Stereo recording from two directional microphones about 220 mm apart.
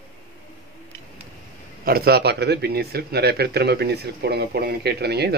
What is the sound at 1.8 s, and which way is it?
Speech, 45° right (ahead or behind).